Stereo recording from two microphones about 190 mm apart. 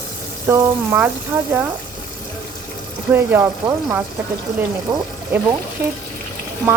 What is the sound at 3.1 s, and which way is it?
Sizzle, 10° right (ahead or behind).